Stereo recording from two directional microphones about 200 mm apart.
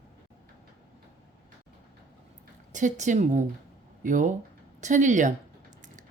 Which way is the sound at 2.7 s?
40° right (ahead or behind).